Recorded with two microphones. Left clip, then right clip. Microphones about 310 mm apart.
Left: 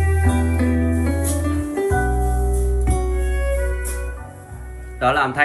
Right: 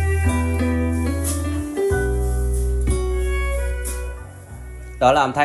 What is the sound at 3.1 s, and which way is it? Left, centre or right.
Music, right.